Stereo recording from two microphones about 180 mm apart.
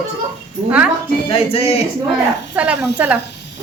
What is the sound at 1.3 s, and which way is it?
Speech, 30° left (ahead or behind).